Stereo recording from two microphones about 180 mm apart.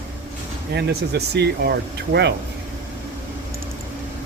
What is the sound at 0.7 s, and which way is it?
Speech, 70° right (ahead or behind).